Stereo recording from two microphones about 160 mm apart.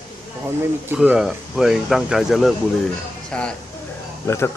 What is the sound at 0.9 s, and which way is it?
Speech, 5° right (ahead or behind).